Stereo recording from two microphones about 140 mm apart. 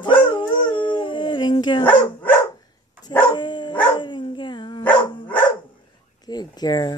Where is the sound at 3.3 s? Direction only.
35° left (ahead or behind).